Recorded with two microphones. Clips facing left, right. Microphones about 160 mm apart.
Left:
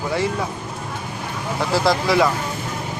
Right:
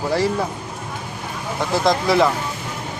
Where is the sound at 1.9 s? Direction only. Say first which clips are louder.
Right 2 dB; 25° right (ahead or behind).